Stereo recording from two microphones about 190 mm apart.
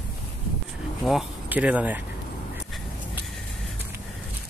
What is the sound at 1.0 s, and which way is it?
Speech, 5° right (ahead or behind).